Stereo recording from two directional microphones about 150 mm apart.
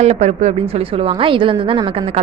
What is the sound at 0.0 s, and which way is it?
A woman's voice, 45° right (ahead or behind).